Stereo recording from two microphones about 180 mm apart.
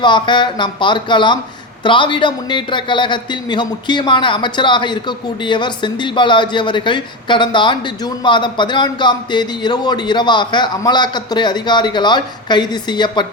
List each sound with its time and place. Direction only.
0.0 s a man's voice: 25° left (ahead or behind)